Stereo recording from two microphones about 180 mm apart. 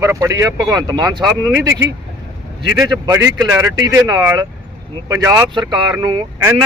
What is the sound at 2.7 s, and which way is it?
Speech, 60° left (ahead or behind).